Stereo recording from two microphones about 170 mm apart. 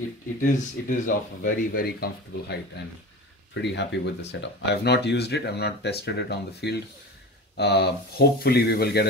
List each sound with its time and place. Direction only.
0.4 s speech: 50° left (ahead or behind)
3.5 s speech: 90° left; by 9.0 s 65° left (ahead or behind)